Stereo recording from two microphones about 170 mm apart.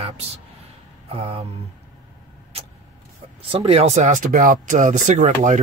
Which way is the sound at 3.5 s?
35° right (ahead or behind).